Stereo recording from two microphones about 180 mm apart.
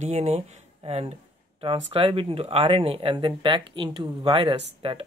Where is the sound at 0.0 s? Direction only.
40° right (ahead or behind).